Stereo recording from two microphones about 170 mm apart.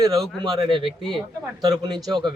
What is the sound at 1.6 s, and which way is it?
Speech, 25° right (ahead or behind).